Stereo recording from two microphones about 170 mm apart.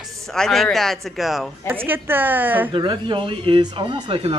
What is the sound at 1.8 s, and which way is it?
Speech, 10° right (ahead or behind).